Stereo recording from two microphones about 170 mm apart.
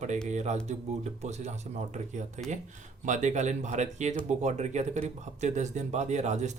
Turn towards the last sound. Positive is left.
turn(degrees=-45)  # may be behind; listen again after turning